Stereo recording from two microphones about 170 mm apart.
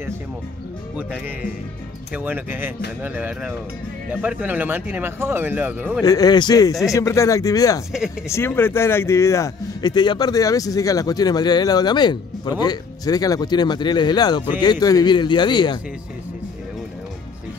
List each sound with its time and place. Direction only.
2.1 s a man's voice: 10° right (ahead or behind)
6.0 s a man's voice: 20° left (ahead or behind)